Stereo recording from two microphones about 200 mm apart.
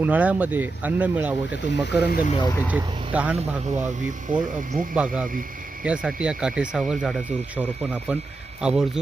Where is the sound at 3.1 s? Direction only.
5° right (ahead or behind).